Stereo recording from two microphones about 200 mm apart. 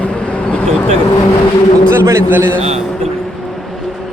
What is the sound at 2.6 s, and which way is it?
Speech, 30° right (ahead or behind).